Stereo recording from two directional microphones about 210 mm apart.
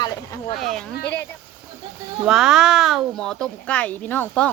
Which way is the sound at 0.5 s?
Centre (ahead or behind).